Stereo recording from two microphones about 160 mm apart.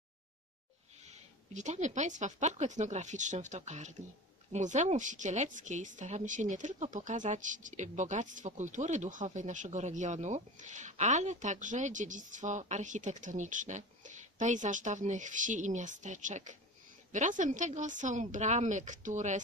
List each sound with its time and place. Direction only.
1.1 s speech: 45° right (ahead or behind)